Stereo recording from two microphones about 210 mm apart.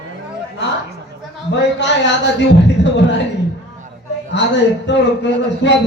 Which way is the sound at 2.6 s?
60° left (ahead or behind).